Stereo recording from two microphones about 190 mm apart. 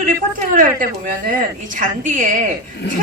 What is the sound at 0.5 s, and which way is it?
A woman's voice, 45° right (ahead or behind).